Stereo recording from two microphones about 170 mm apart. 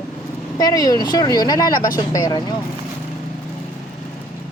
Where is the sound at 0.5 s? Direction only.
20° left (ahead or behind).